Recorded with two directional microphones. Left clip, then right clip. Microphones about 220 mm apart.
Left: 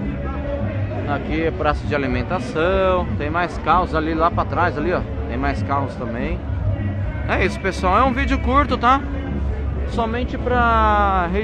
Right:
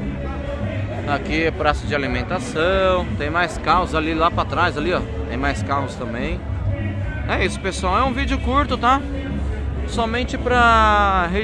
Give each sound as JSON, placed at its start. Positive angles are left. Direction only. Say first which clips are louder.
{"t": 1.0, "sound": "a man's voice", "louder": "right 2 dB", "side_deg": -5}